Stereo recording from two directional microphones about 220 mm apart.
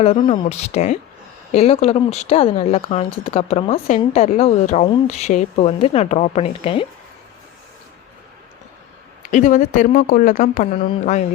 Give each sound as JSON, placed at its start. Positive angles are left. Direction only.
{"t": 0.0, "sound": "speech", "side_deg": 25}
{"t": 9.3, "sound": "speech", "side_deg": 35}